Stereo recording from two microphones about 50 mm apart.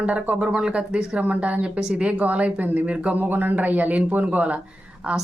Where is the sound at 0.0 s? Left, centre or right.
Right.